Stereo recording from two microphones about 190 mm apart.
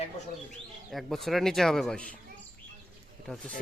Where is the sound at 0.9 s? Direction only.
Centre (ahead or behind).